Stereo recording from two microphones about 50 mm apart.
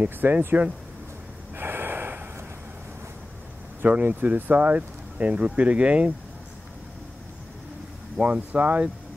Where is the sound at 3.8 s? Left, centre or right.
Right.